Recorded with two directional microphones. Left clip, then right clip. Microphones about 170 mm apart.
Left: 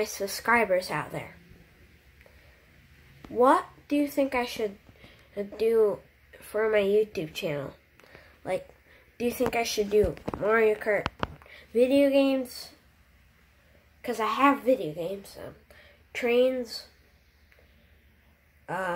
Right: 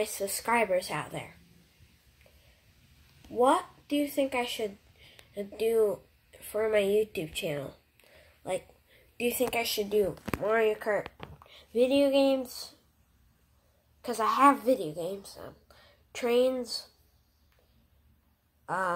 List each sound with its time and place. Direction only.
0.2 s a woman's voice: 5° left (ahead or behind)
3.9 s a woman's voice: 10° left (ahead or behind)
14.0 s a woman's voice: centre (ahead or behind)
15.2 s a woman's voice: 10° left (ahead or behind)
16.3 s a woman's voice: centre (ahead or behind)
18.7 s a woman's voice: 10° left (ahead or behind)